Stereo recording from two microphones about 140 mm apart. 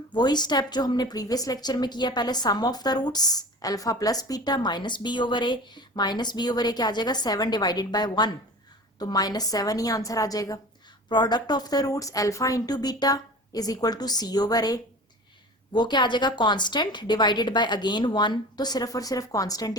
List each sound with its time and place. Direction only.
0.1 s a woman's voice: 30° left (ahead or behind)